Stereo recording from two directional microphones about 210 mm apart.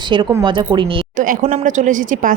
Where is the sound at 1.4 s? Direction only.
35° right (ahead or behind).